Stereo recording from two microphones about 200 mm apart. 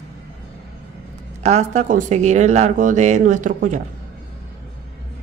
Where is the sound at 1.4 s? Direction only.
35° right (ahead or behind).